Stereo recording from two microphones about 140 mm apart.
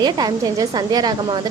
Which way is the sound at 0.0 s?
30° right (ahead or behind).